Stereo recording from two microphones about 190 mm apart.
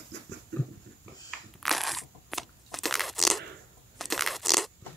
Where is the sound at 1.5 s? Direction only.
Centre (ahead or behind).